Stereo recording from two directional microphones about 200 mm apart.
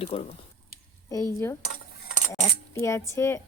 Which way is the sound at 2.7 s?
15° left (ahead or behind).